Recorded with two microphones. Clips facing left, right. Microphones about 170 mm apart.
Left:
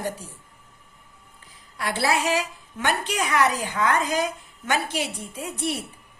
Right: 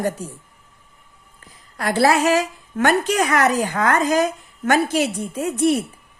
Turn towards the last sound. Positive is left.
turn(degrees=-45)  # may be behind; listen again after turning